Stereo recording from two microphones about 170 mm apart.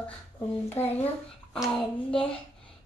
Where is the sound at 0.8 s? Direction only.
40° left (ahead or behind).